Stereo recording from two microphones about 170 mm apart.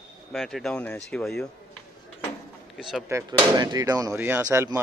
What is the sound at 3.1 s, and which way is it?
Speech, 25° right (ahead or behind).